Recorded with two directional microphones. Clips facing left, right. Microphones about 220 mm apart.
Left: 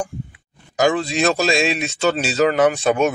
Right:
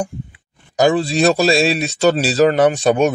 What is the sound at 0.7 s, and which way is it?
Speech, 35° right (ahead or behind).